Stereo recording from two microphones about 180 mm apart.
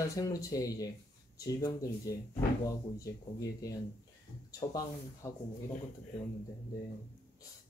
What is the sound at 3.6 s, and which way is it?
Speech, 20° left (ahead or behind).